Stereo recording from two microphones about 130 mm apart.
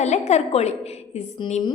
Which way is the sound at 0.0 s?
60° left (ahead or behind).